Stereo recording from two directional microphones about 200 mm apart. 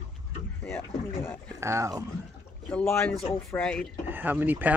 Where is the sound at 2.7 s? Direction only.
5° left (ahead or behind).